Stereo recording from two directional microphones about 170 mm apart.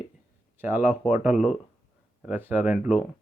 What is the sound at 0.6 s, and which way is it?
Speech, 10° right (ahead or behind).